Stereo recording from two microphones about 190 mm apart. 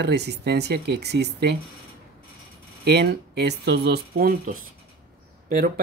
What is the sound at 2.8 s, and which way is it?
Speech, 60° right (ahead or behind).